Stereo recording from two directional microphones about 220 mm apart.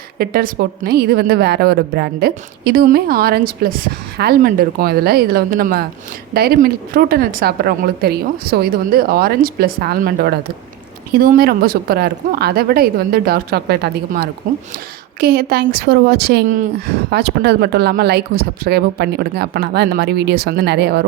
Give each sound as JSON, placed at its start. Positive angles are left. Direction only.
{"t": 0.2, "sound": "a woman's voice", "side_deg": -45}